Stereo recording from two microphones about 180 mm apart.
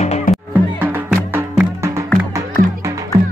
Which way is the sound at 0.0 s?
35° left (ahead or behind).